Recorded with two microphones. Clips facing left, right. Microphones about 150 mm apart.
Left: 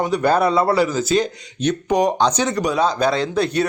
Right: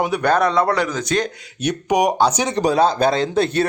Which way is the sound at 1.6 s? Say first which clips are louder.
Even; 15° right (ahead or behind).